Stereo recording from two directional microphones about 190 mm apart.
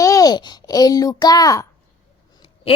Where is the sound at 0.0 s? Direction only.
20° left (ahead or behind).